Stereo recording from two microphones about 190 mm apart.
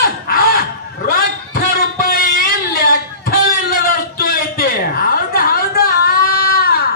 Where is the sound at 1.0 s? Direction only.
50° left (ahead or behind).